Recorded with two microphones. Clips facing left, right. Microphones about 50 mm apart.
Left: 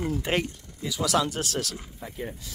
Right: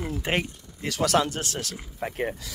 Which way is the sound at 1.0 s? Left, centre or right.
Right.